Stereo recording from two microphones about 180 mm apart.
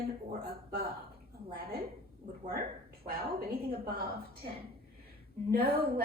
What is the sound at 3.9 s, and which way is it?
Speech, 55° right (ahead or behind).